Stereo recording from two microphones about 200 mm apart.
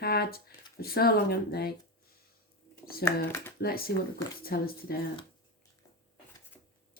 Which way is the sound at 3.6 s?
50° left (ahead or behind).